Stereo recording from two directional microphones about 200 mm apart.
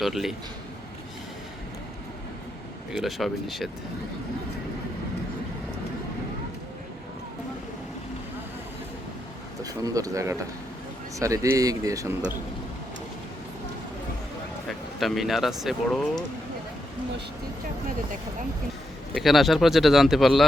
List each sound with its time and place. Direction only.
0.0 s speech: centre (ahead or behind)
2.9 s speech: centre (ahead or behind)
9.6 s speech: 15° right (ahead or behind)
14.7 s speech: centre (ahead or behind)
19.1 s speech: centre (ahead or behind)